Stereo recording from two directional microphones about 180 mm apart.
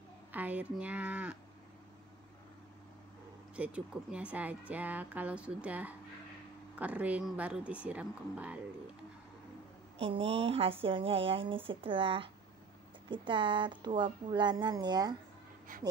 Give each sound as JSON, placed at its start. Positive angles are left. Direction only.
{"t": 0.3, "sound": "speech", "side_deg": -10}
{"t": 3.5, "sound": "speech", "side_deg": -5}
{"t": 9.9, "sound": "a woman's voice", "side_deg": -30}
{"t": 15.7, "sound": "speech", "side_deg": -50}